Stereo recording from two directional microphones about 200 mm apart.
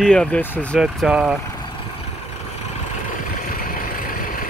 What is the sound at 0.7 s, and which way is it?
Speech, 5° right (ahead or behind).